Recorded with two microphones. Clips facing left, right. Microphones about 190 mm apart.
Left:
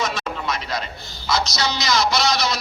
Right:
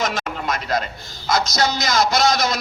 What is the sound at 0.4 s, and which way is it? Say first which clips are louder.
A man's voice: right 6 dB; 50° right (ahead or behind).